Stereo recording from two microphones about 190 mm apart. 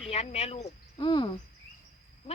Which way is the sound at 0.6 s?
25° left (ahead or behind).